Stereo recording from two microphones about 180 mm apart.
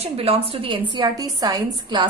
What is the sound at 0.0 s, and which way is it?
A woman's voice, 30° right (ahead or behind).